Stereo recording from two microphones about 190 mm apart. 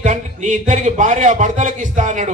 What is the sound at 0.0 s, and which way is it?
A man's voice, 40° right (ahead or behind).